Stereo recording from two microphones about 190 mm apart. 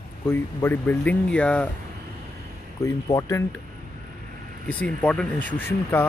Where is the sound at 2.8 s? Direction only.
15° left (ahead or behind).